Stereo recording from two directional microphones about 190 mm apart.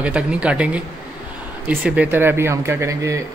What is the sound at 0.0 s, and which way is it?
Speech, 5° right (ahead or behind).